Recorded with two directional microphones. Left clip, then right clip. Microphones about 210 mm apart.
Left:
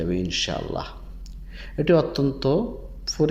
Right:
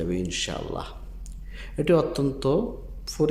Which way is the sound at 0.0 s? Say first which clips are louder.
Left 3 dB; centre (ahead or behind).